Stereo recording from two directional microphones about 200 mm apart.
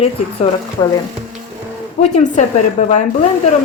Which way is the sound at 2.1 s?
35° left (ahead or behind).